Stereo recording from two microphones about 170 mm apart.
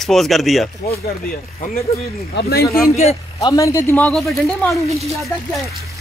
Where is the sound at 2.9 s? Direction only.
40° left (ahead or behind).